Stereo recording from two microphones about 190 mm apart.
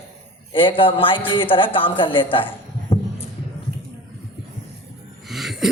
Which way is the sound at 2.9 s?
30° left (ahead or behind).